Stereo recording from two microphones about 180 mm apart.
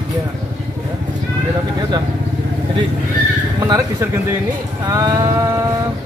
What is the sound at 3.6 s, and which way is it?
Speech, 20° right (ahead or behind).